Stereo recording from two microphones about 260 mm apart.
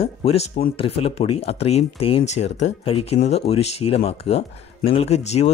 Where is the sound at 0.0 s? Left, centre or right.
Left.